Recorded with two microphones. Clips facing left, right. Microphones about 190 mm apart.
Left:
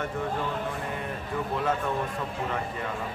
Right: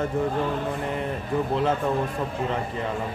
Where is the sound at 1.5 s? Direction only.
30° right (ahead or behind).